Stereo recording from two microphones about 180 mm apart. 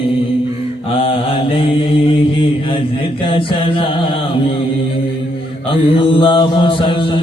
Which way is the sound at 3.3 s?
30° left (ahead or behind).